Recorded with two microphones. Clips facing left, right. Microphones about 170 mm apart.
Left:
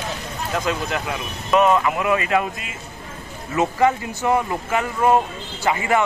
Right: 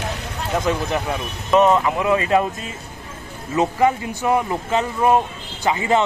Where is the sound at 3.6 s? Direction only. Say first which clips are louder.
Right 1 dB; 15° right (ahead or behind).